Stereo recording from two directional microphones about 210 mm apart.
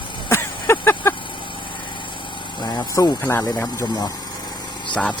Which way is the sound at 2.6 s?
20° left (ahead or behind).